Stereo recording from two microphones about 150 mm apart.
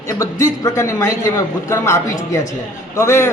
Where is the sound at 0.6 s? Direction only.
25° left (ahead or behind).